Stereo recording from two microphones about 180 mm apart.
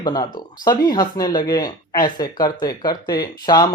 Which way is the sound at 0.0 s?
25° left (ahead or behind).